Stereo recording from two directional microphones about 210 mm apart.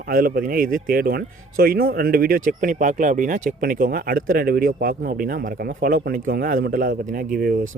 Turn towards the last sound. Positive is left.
turn(degrees=-45)  # may be behind; listen again after turning